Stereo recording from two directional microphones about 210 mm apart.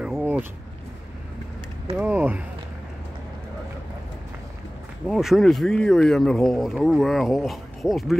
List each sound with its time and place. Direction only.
0.0 s vehicle: 5° right (ahead or behind)
2.0 s a sound: 5° right (ahead or behind)
5.0 s speech: centre (ahead or behind)